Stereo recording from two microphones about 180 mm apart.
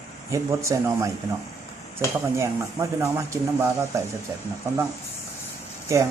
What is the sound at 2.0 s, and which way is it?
Speech, 15° left (ahead or behind).